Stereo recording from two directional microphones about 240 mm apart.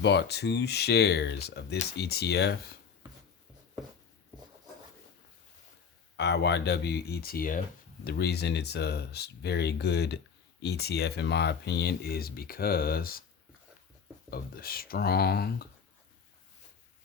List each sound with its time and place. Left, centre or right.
0.0 s speech: left
6.1 s speech: left
14.3 s speech: left